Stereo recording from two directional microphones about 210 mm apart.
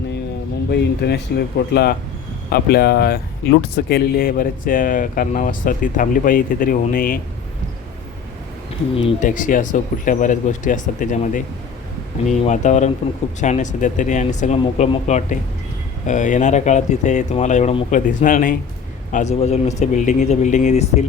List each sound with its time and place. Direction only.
0.7 s speech: 50° left (ahead or behind)
9.0 s speech: 30° left (ahead or behind)
12.5 s speech: 35° left (ahead or behind)